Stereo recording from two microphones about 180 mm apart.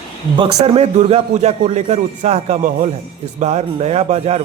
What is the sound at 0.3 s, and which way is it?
A man's voice, 30° right (ahead or behind).